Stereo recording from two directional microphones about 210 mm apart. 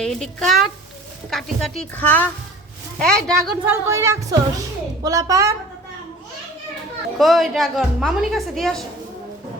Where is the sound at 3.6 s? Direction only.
15° right (ahead or behind).